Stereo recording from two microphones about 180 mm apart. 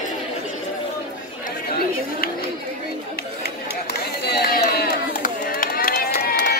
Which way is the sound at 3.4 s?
65° left (ahead or behind).